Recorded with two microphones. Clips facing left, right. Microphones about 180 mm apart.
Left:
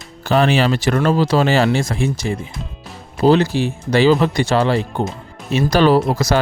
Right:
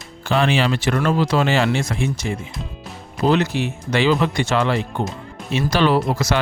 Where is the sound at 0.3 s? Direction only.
40° left (ahead or behind).